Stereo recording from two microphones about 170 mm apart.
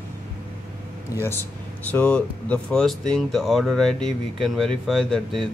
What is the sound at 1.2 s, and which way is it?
Speech, 15° left (ahead or behind).